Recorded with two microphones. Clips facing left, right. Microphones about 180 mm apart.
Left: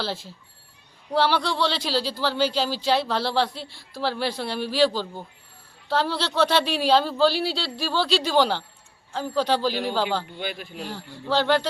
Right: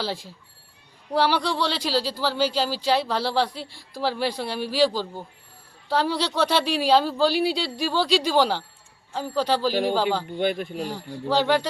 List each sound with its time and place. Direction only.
0.0 s speech: 10° right (ahead or behind)
10.3 s speech: 50° right (ahead or behind)
10.9 s speech: 10° right (ahead or behind)